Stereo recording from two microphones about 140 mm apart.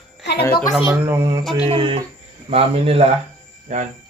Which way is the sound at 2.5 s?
45° right (ahead or behind).